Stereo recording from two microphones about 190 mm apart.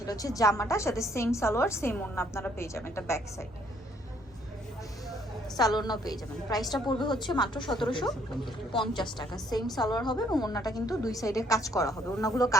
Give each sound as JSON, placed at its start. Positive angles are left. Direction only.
{"t": 0.0, "sound": "a woman's voice", "side_deg": 20}
{"t": 5.5, "sound": "a woman's voice", "side_deg": 20}